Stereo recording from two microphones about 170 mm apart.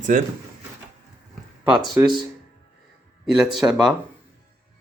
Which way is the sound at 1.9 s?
20° right (ahead or behind).